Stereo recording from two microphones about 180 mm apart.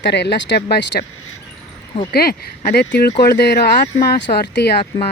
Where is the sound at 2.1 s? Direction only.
60° left (ahead or behind).